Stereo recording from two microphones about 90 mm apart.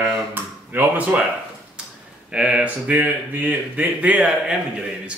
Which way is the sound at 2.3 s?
15° right (ahead or behind).